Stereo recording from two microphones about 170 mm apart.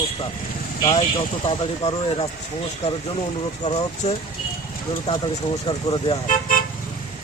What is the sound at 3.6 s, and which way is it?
Speech, 40° left (ahead or behind).